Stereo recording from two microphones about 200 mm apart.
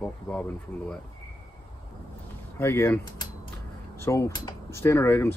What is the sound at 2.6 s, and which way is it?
Speech, 15° left (ahead or behind).